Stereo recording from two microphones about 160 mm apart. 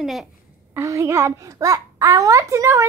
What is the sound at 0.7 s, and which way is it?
A child's voice, 15° right (ahead or behind).